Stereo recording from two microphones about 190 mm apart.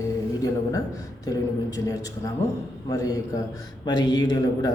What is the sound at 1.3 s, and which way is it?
A man's voice, 20° left (ahead or behind).